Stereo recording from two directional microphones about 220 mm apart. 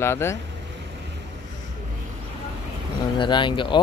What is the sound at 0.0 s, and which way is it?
Speech, 10° left (ahead or behind).